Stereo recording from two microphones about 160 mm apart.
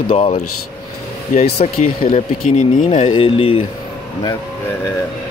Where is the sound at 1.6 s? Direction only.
45° left (ahead or behind).